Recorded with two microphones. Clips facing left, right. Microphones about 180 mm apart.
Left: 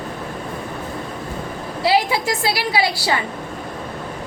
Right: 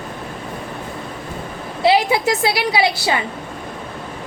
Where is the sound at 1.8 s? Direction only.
20° right (ahead or behind).